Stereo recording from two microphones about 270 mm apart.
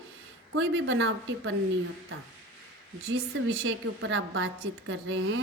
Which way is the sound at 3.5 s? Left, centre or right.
Right.